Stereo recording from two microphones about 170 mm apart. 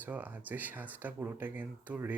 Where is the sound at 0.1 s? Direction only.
10° right (ahead or behind).